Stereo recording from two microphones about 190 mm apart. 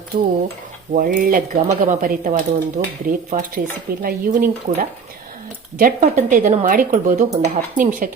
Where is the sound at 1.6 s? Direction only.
40° right (ahead or behind).